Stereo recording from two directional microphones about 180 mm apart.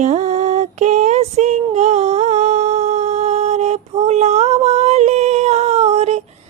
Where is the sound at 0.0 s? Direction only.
40° right (ahead or behind).